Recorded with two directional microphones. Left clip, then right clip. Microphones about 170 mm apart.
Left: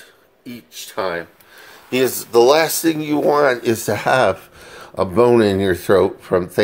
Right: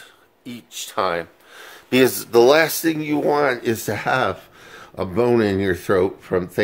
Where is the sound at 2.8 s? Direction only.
5° right (ahead or behind).